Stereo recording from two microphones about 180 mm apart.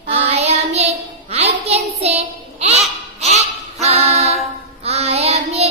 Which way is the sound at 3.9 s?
35° right (ahead or behind).